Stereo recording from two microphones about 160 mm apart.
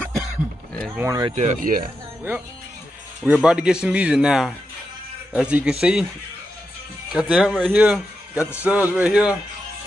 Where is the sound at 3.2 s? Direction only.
5° right (ahead or behind).